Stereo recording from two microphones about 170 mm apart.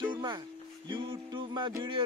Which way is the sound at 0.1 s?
25° right (ahead or behind).